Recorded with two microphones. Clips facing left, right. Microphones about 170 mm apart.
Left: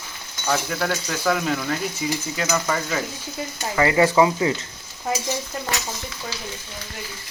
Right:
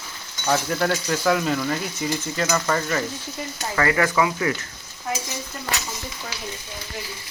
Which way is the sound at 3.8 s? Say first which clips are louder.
Left 4 dB; 20° left (ahead or behind).